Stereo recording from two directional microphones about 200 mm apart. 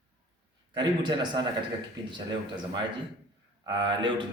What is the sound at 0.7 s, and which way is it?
Speech, 20° right (ahead or behind).